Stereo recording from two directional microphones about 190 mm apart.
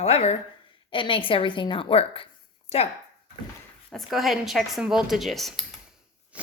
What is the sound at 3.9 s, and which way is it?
Speech, centre (ahead or behind).